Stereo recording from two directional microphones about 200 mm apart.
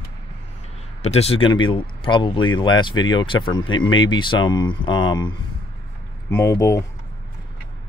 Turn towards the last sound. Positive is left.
turn(degrees=15)  # may be behind; listen again after turning